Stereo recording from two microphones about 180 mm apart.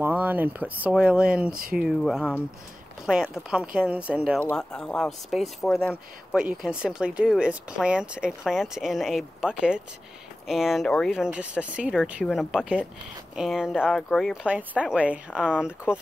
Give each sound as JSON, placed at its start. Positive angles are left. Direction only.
{"t": 0.0, "sound": "speech", "side_deg": -10}
{"t": 1.5, "sound": "speech", "side_deg": -55}
{"t": 1.8, "sound": "speech", "side_deg": 0}
{"t": 4.4, "sound": "speech", "side_deg": 5}